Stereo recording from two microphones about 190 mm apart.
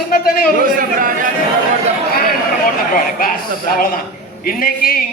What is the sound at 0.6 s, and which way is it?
Speech, 45° right (ahead or behind).